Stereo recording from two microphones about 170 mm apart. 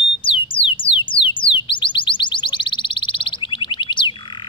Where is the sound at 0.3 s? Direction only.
30° left (ahead or behind).